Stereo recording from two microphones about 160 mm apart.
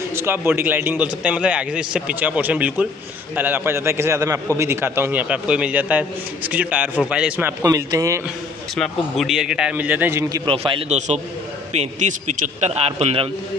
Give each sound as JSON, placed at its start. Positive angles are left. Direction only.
{"t": 0.1, "sound": "a man's voice", "side_deg": -15}
{"t": 8.7, "sound": "a man's voice", "side_deg": 0}
{"t": 10.3, "sound": "a man's voice", "side_deg": -30}